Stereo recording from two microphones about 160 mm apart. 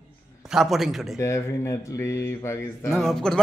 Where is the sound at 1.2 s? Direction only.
20° left (ahead or behind).